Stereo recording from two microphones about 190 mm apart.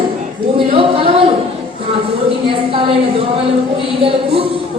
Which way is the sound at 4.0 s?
30° right (ahead or behind).